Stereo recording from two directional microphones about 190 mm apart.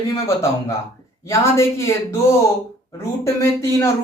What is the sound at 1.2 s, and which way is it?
Speech, 15° left (ahead or behind).